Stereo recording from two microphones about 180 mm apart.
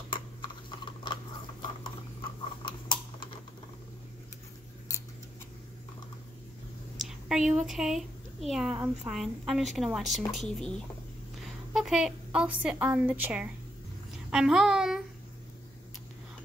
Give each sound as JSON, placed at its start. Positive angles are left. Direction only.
{"t": 0.1, "sound": "computer keyboard", "side_deg": 25}
{"t": 7.0, "sound": "a woman's voice", "side_deg": 0}